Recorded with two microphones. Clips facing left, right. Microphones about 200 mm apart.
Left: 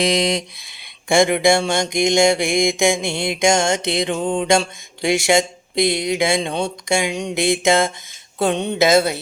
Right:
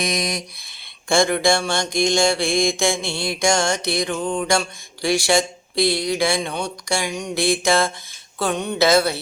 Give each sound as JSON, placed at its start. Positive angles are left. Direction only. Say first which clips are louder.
{"t": 0.0, "sound": "mantra", "louder": "left 6 dB", "side_deg": 25}